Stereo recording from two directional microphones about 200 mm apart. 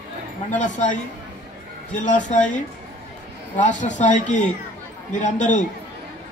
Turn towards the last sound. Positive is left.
turn(degrees=40)  # may be behind; listen again after turning